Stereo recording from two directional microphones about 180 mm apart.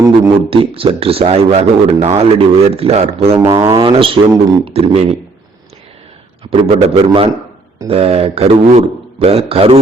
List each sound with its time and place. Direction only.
0.0 s a man's voice: 30° right (ahead or behind)
3.4 s speech: 20° right (ahead or behind)
6.5 s a man's voice: 30° right (ahead or behind)